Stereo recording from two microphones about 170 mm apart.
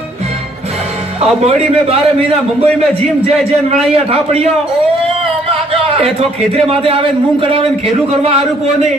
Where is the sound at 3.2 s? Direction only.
40° right (ahead or behind).